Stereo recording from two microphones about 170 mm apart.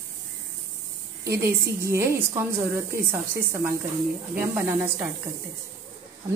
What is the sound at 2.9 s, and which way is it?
Speech, 60° right (ahead or behind).